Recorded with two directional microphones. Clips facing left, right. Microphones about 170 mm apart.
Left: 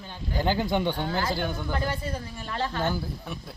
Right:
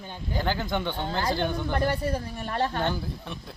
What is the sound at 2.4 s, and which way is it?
Speech, 50° right (ahead or behind).